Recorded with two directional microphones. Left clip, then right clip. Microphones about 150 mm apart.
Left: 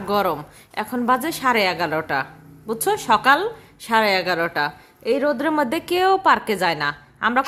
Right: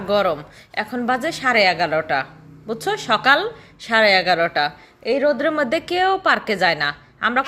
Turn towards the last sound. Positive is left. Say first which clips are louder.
# even
turn(degrees=25)  # may be behind; listen again after turning